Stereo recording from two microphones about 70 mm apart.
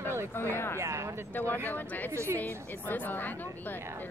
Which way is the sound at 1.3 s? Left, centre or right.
Left.